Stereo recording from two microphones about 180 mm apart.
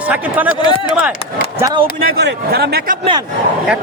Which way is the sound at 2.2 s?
65° right (ahead or behind).